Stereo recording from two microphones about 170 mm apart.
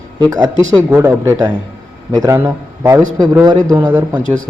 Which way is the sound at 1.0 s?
15° right (ahead or behind).